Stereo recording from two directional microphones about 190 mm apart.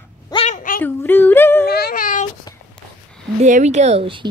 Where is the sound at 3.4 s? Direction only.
40° right (ahead or behind).